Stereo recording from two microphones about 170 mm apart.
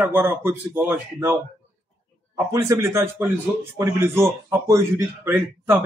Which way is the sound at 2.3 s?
20° right (ahead or behind).